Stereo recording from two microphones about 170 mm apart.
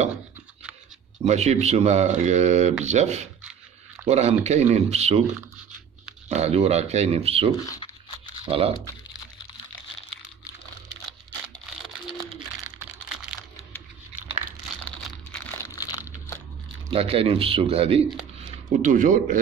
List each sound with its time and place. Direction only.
1.2 s speech: 40° right (ahead or behind)
7.5 s speech: 20° left (ahead or behind)
8.5 s speech: 35° right (ahead or behind)
11.1 s crumpling: centre (ahead or behind)
15.3 s a sound: 15° left (ahead or behind)
16.9 s speech: 35° right (ahead or behind)
18.8 s a man's voice: 50° right (ahead or behind)